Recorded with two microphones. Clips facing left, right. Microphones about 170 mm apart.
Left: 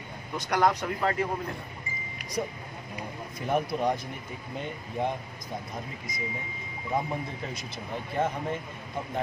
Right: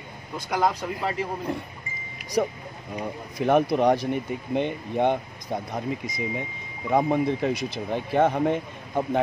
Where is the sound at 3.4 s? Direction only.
70° right (ahead or behind).